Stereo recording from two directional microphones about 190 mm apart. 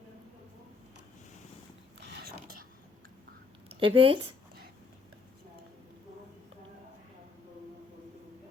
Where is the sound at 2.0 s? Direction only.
55° right (ahead or behind).